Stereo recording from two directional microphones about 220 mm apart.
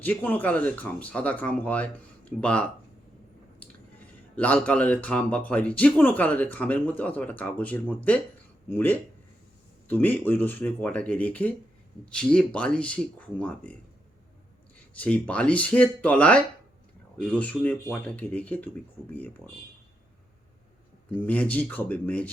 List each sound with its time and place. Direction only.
0.0 s speech: 5° left (ahead or behind)
4.4 s speech: 5° left (ahead or behind)
14.9 s speech: 5° left (ahead or behind)
21.1 s speech: 5° left (ahead or behind)